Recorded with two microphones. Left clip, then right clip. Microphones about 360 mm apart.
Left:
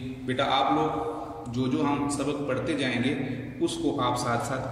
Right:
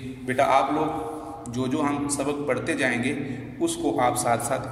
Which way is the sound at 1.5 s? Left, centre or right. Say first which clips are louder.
Right 1 dB; centre.